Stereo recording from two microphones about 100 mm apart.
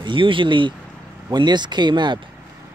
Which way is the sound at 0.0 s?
55° right (ahead or behind).